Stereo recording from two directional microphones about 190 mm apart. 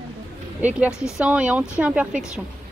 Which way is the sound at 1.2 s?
5° right (ahead or behind).